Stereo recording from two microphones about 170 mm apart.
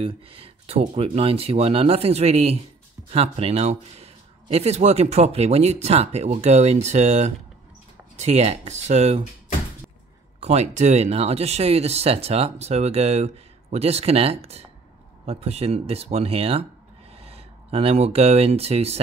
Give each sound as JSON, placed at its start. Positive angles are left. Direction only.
{"t": 0.0, "sound": "a man's voice", "side_deg": -35}
{"t": 10.4, "sound": "a man's voice", "side_deg": -40}